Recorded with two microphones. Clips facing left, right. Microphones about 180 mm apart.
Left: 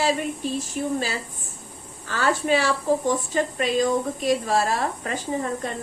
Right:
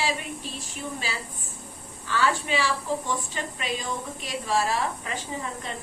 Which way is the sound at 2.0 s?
45° left (ahead or behind).